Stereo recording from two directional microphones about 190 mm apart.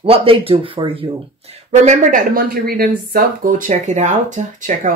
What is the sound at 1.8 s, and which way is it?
Speech, 40° right (ahead or behind).